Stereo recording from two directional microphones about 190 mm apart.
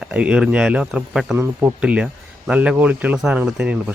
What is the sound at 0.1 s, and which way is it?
Speech, 5° right (ahead or behind).